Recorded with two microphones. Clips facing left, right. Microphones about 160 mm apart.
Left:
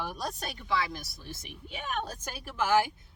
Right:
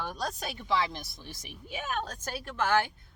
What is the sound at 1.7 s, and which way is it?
A woman's voice, 5° right (ahead or behind).